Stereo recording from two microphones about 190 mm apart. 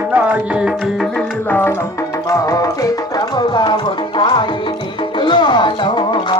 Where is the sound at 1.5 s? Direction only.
10° left (ahead or behind).